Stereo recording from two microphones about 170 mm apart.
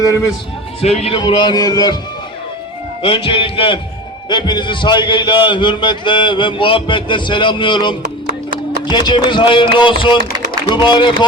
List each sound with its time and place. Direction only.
0.1 s a man's voice: 15° left (ahead or behind)
0.8 s a man's voice: 40° left (ahead or behind)
1.2 s a man's voice: 25° left (ahead or behind)
3.0 s a man's voice: 30° left (ahead or behind)